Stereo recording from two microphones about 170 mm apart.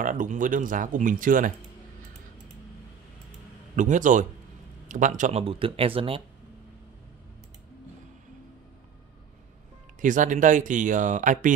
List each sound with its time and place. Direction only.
0.0 s speech: 50° right (ahead or behind)
3.7 s speech: 45° right (ahead or behind)
5.4 s speech: 35° right (ahead or behind)
10.0 s speech: 50° right (ahead or behind)